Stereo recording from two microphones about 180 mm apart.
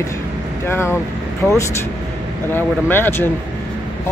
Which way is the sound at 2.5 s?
10° left (ahead or behind).